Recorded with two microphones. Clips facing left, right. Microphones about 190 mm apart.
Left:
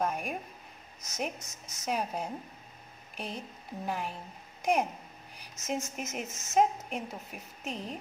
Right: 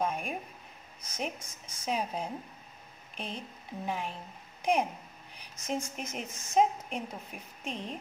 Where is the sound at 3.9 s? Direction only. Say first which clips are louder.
Even; centre (ahead or behind).